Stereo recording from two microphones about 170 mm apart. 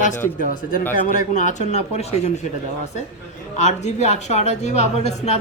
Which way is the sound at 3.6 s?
40° left (ahead or behind).